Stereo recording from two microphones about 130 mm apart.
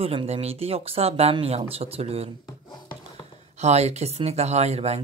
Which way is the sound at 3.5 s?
55° right (ahead or behind).